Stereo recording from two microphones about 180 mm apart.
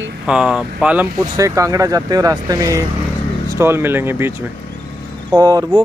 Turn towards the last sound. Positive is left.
turn(degrees=-20)  # may be behind; listen again after turning